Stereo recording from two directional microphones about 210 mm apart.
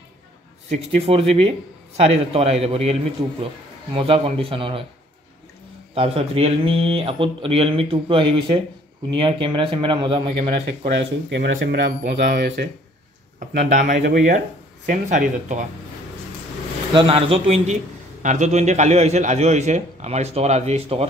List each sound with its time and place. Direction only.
0.7 s speech: 30° right (ahead or behind)
5.9 s speech: 30° right (ahead or behind)
11.2 s speech: 55° right (ahead or behind)
13.4 s a man's voice: 40° right (ahead or behind)
16.9 s a man's voice: 25° right (ahead or behind)